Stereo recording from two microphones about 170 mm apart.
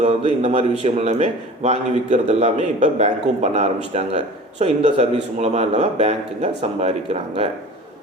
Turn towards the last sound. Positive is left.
turn(degrees=-35)  # may be behind; listen again after turning